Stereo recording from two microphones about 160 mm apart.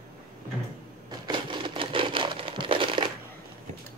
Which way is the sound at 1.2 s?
30° right (ahead or behind).